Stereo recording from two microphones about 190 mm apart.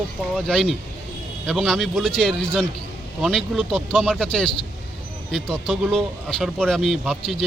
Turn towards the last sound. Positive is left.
turn(degrees=-5)  # may be behind; listen again after turning